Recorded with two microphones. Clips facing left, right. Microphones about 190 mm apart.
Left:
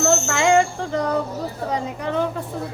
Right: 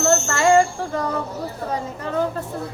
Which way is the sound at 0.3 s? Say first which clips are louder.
Right 1 dB; 15° left (ahead or behind).